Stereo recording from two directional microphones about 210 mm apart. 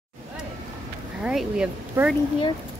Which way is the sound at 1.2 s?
5° right (ahead or behind).